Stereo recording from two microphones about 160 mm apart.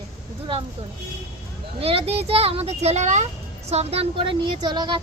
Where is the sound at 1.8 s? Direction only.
40° right (ahead or behind).